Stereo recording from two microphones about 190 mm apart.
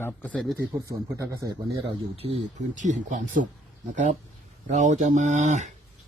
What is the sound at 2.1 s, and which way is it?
Speech, 30° right (ahead or behind).